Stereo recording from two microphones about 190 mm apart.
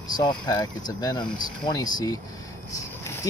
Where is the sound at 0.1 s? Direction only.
20° left (ahead or behind).